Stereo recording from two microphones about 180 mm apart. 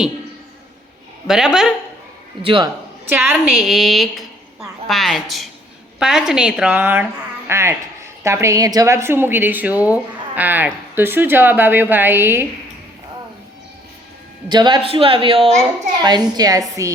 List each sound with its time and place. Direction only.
1.3 s speech: 5° right (ahead or behind)
2.4 s a child's voice: 30° right (ahead or behind)
3.5 s a woman's voice: centre (ahead or behind)
14.5 s a child's voice: 25° right (ahead or behind)